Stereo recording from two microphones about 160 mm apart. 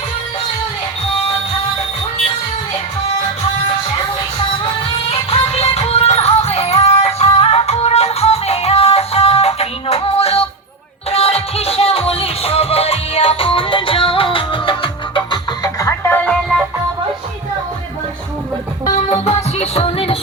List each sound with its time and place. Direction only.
4.6 s music: 40° left (ahead or behind); by 16.6 s centre (ahead or behind)
18.9 s music: 45° left (ahead or behind)